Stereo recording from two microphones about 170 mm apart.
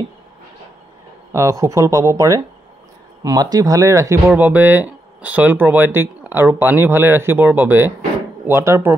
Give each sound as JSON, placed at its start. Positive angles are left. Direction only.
{"t": 1.3, "sound": "speech", "side_deg": -20}